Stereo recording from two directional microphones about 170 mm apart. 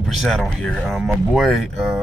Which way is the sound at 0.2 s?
Centre (ahead or behind).